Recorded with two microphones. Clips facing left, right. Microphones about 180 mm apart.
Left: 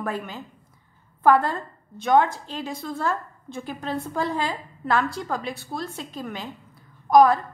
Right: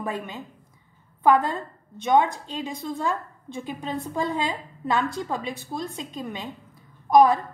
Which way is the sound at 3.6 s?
Centre (ahead or behind).